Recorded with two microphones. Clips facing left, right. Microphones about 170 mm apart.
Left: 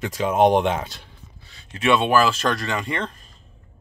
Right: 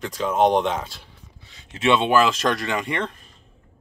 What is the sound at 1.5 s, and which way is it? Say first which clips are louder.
Speech: even; 20° right (ahead or behind).